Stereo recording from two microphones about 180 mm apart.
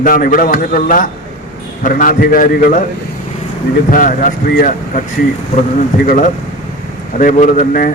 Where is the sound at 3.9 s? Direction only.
50° left (ahead or behind).